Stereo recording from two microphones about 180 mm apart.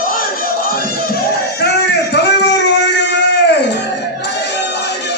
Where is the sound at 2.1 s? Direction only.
75° left (ahead or behind).